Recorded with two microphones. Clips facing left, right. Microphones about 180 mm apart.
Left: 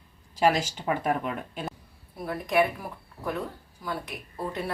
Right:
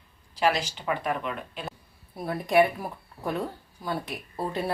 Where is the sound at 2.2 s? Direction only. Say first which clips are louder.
Right 3 dB; 30° right (ahead or behind).